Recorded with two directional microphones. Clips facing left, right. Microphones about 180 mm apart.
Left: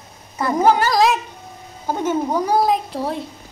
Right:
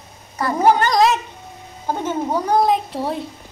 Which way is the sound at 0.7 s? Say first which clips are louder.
Even; 5° left (ahead or behind).